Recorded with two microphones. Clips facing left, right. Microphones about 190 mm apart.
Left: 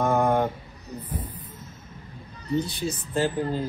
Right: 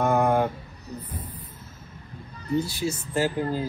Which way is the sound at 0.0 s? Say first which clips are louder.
Even; centre (ahead or behind).